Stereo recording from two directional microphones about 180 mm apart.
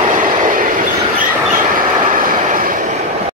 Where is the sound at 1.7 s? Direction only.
50° right (ahead or behind).